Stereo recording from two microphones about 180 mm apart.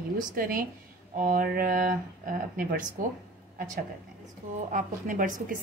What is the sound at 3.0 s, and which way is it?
Speech, 50° right (ahead or behind).